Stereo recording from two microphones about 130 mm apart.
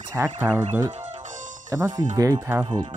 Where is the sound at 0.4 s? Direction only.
15° right (ahead or behind).